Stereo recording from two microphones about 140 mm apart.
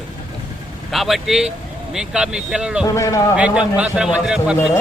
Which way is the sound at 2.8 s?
25° left (ahead or behind).